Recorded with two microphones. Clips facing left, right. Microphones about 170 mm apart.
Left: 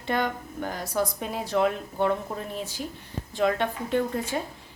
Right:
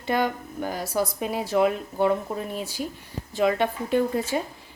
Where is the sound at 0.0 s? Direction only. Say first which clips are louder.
Right 3 dB; 5° right (ahead or behind).